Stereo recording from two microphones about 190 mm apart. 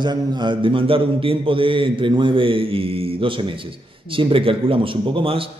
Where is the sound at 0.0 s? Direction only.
25° right (ahead or behind).